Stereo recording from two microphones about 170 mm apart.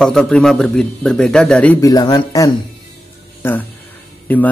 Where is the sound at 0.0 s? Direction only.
5° left (ahead or behind).